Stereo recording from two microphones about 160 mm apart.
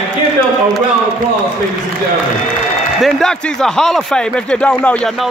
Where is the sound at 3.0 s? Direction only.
5° left (ahead or behind).